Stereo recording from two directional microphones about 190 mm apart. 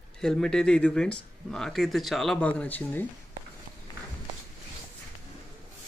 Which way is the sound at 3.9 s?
20° left (ahead or behind).